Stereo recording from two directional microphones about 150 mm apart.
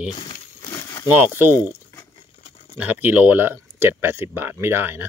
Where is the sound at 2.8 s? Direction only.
10° right (ahead or behind).